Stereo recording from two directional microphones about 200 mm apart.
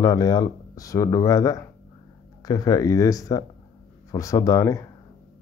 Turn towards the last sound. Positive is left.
turn(degrees=15)  # may be behind; listen again after turning